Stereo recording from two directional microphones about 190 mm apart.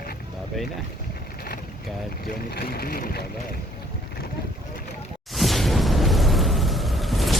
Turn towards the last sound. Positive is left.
turn(degrees=0)  # may be behind; listen again after turning